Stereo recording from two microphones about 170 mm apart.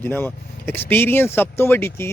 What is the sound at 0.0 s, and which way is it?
Speech, 10° left (ahead or behind).